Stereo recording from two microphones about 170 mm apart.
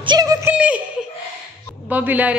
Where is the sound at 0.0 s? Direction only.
25° right (ahead or behind).